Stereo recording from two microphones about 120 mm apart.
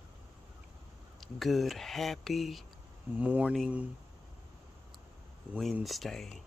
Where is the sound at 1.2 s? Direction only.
Centre (ahead or behind).